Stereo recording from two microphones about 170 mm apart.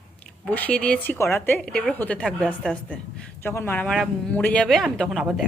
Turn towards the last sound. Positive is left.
turn(degrees=0)  # may be behind; listen again after turning